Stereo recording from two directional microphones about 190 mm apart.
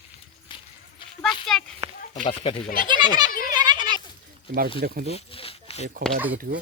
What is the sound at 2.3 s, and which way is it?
Speech, 25° left (ahead or behind).